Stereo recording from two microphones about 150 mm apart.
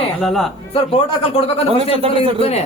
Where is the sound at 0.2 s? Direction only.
Centre (ahead or behind).